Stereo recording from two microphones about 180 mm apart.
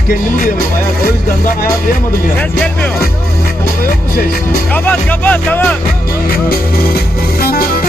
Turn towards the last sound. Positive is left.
turn(degrees=55)  # may be behind; listen again after turning